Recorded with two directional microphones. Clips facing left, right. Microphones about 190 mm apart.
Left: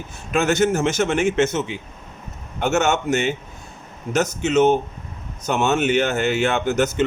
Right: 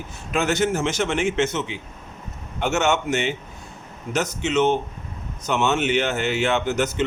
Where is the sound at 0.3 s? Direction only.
45° left (ahead or behind).